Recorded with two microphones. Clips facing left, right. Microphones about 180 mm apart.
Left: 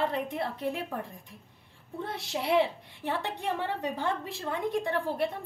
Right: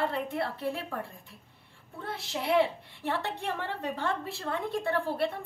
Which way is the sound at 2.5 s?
15° left (ahead or behind).